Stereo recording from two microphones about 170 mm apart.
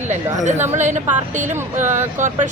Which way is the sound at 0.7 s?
45° right (ahead or behind).